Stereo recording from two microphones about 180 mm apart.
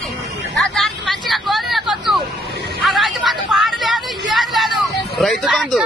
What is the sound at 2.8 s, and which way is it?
Hubbub, centre (ahead or behind).